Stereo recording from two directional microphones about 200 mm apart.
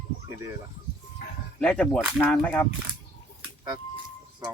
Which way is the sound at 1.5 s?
5° left (ahead or behind).